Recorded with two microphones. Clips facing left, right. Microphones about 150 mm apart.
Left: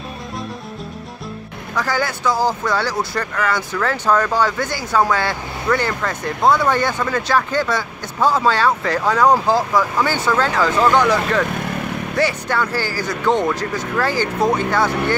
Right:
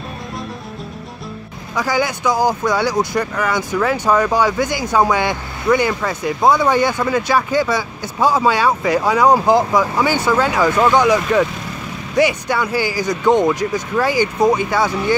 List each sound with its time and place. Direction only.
1.8 s speech: 15° right (ahead or behind)
11.4 s vehicle: 60° left (ahead or behind)
12.2 s speech: 15° right (ahead or behind)